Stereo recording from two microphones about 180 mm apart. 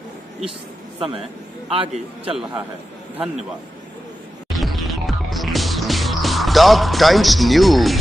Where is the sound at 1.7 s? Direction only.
35° right (ahead or behind).